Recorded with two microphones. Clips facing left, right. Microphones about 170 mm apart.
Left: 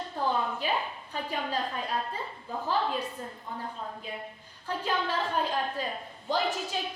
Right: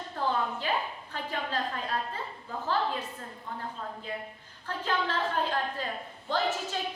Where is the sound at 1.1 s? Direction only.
15° left (ahead or behind).